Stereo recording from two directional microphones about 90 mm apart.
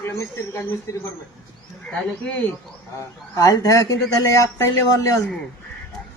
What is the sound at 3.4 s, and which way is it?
A man's voice, 40° left (ahead or behind).